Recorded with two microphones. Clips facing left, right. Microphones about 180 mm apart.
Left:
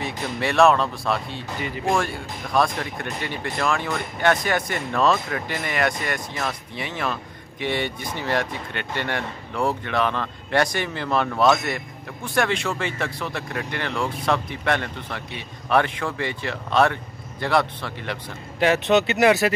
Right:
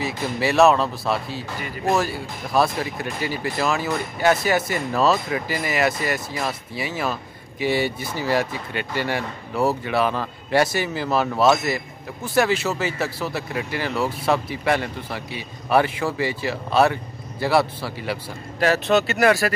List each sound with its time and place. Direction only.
0.0 s speech: 5° right (ahead or behind)
18.6 s speech: 20° left (ahead or behind)